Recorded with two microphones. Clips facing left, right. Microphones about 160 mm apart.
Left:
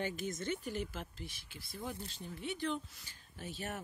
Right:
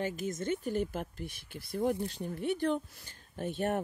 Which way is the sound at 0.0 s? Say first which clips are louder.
Right 4 dB; 40° right (ahead or behind).